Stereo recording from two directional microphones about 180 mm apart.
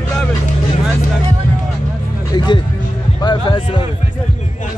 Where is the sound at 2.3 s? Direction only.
25° left (ahead or behind).